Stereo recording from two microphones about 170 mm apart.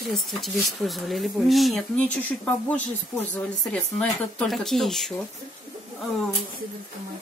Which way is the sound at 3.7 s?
5° left (ahead or behind).